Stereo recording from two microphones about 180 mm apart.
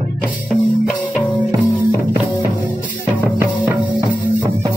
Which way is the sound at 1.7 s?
10° right (ahead or behind).